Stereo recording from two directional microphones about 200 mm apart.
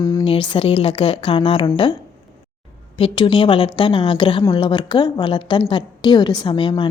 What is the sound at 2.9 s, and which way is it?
Speech, 25° left (ahead or behind).